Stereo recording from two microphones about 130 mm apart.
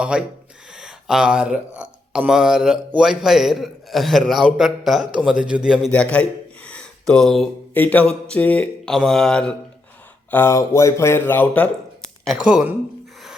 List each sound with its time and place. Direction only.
0.0 s a man's voice: 5° right (ahead or behind)
5.9 s mantra: 10° left (ahead or behind)
7.1 s a man's voice: 5° left (ahead or behind)
7.7 s mantra: 15° left (ahead or behind)
10.3 s speech: 20° left (ahead or behind); by 12.4 s 5° left (ahead or behind)
12.4 s speech: 5° right (ahead or behind)